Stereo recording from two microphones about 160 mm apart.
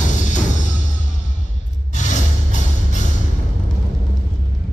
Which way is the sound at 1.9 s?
50° left (ahead or behind).